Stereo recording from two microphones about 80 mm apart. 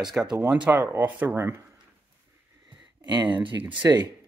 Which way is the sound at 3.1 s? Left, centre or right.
Right.